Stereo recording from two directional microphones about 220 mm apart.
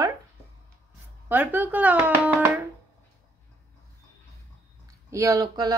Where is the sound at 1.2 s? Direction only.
10° right (ahead or behind).